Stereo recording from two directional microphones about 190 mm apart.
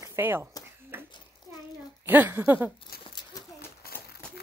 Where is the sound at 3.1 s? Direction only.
20° left (ahead or behind).